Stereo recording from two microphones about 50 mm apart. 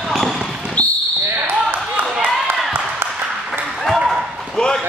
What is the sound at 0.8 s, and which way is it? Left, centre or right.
Basketball bounce, left.